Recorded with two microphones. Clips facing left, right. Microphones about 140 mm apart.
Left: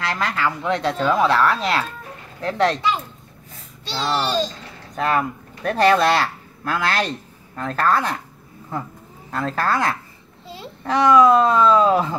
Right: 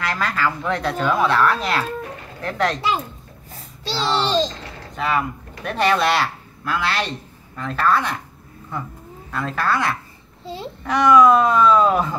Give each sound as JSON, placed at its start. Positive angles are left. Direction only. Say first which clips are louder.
{"t": 0.0, "sound": "speech", "louder": "even", "side_deg": 25}
{"t": 3.8, "sound": "a child's voice", "louder": "right 1 dB", "side_deg": -30}
{"t": 4.9, "sound": "speech", "louder": "left 2 dB", "side_deg": 40}
{"t": 9.3, "sound": "speech", "louder": "left 1 dB", "side_deg": 35}